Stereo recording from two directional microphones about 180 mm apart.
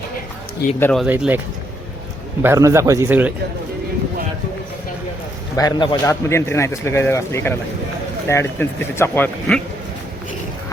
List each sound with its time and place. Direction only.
0.8 s a man's voice: 5° left (ahead or behind)
1.0 s a man's voice: 10° right (ahead or behind)
2.4 s a man's voice: 15° right (ahead or behind)
5.5 s a man's voice: 20° left (ahead or behind)